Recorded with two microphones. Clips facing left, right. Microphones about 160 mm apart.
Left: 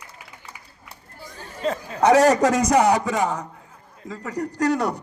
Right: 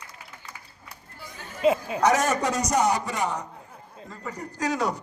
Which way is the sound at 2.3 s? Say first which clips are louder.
Left 7 dB; 90° left.